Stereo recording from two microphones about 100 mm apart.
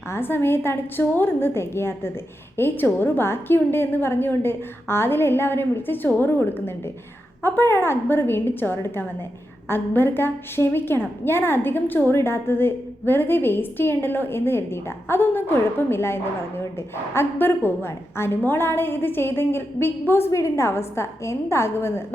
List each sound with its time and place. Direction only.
0.1 s a woman's voice: 20° left (ahead or behind)